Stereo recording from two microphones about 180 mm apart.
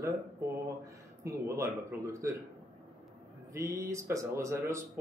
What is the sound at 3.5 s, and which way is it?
Speech, 15° right (ahead or behind).